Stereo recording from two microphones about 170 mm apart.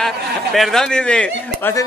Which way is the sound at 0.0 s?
Centre (ahead or behind).